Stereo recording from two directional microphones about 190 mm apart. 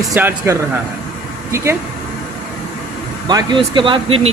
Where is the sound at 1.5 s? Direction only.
15° right (ahead or behind).